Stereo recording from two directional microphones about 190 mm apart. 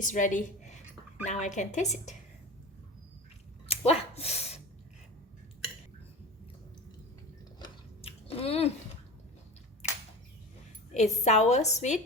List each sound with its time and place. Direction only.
0.0 s a woman's voice: 40° left (ahead or behind)
3.7 s sneeze: 30° left (ahead or behind)
7.6 s chewing: 30° left (ahead or behind)
9.8 s a sound: 35° left (ahead or behind)
10.9 s a woman's voice: 35° left (ahead or behind)